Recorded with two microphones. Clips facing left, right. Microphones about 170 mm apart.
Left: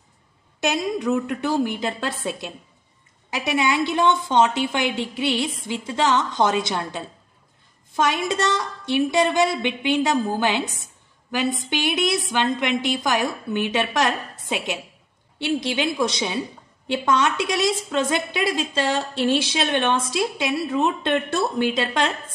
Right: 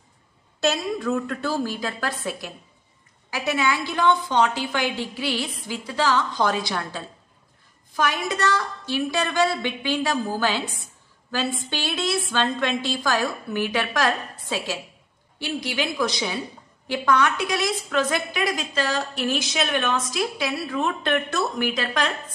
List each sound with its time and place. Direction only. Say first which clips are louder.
0.6 s a woman's voice: left 1 dB; 20° left (ahead or behind)